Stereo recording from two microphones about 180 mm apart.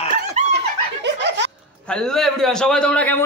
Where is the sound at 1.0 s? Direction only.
75° right (ahead or behind).